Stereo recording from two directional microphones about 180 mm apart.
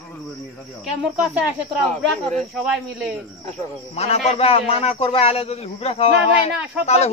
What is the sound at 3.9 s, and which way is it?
A man's voice, 35° left (ahead or behind).